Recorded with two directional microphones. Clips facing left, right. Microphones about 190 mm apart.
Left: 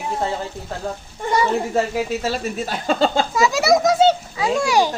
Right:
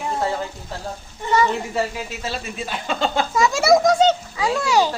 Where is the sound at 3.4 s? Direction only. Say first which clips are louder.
Right 1 dB; centre (ahead or behind).